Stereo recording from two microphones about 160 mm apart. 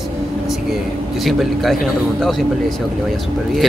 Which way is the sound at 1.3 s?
Centre (ahead or behind).